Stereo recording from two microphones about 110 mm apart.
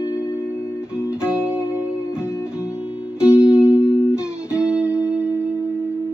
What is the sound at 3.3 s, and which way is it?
Music, 10° right (ahead or behind).